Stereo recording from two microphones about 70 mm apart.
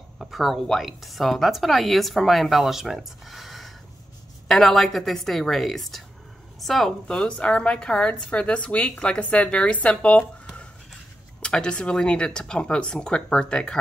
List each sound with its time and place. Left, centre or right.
0.2 s a woman's voice: centre
11.4 s a woman's voice: centre